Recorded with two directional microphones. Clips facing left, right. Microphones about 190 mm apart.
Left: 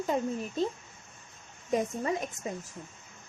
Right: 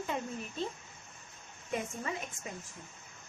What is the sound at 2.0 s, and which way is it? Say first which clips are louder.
Speech: left 7 dB; 35° left (ahead or behind).